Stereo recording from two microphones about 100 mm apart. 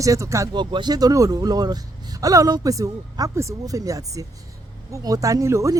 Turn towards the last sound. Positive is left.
turn(degrees=-30)  # may be behind; listen again after turning